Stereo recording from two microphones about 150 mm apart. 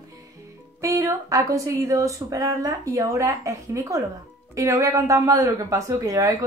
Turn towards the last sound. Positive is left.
turn(degrees=-20)  # may be behind; listen again after turning